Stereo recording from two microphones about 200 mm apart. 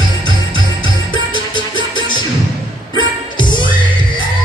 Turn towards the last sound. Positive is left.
turn(degrees=25)  # may be behind; listen again after turning